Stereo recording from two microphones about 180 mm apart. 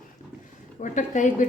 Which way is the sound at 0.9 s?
45° left (ahead or behind).